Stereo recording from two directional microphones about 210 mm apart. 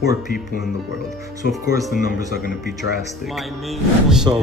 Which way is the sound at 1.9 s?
45° left (ahead or behind).